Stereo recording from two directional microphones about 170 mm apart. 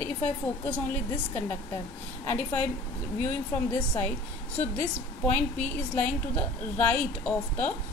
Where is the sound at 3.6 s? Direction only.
10° left (ahead or behind).